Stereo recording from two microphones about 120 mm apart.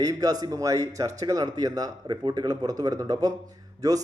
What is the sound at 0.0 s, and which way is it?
A man's voice, 30° right (ahead or behind).